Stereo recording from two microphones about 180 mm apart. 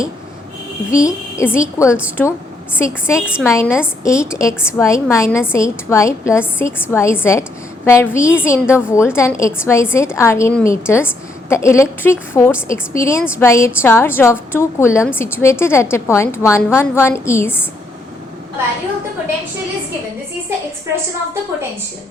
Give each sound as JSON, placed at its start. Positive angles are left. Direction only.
{"t": 0.9, "sound": "a woman's voice", "side_deg": 15}